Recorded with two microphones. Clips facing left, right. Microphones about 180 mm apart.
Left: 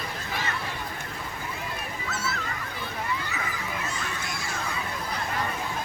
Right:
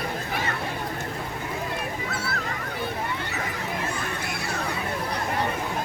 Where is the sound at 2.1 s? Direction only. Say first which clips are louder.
Right 1 dB; 60° right (ahead or behind).